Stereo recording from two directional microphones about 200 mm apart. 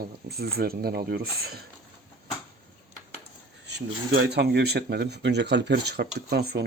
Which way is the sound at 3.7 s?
55° right (ahead or behind).